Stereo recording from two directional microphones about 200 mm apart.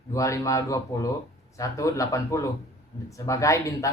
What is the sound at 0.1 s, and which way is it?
Speech, 15° left (ahead or behind).